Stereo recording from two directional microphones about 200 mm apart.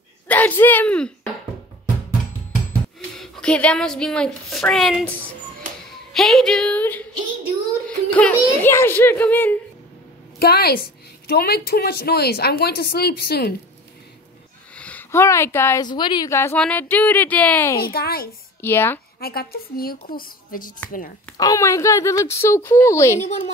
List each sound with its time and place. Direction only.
0.3 s speech: 10° left (ahead or behind)
3.2 s a woman's voice: 5° left (ahead or behind)
6.1 s a woman's voice: centre (ahead or behind)
8.1 s a woman's voice: 5° left (ahead or behind)
10.4 s a woman's voice: 50° left (ahead or behind)
14.8 s a woman's voice: 10° left (ahead or behind)
17.7 s a woman's voice: 50° left (ahead or behind)
18.6 s a woman's voice: 10° left (ahead or behind)
19.1 s a woman's voice: 50° left (ahead or behind)
21.4 s a woman's voice: 15° left (ahead or behind)
23.1 s speech: 35° left (ahead or behind)